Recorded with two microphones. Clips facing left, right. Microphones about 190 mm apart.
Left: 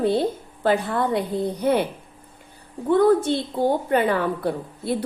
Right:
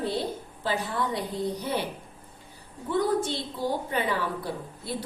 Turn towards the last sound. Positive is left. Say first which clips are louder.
# left 8 dB
turn(degrees=60)  # may be behind; listen again after turning